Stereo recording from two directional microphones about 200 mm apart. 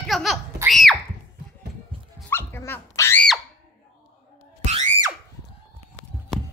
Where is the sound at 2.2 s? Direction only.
10° left (ahead or behind).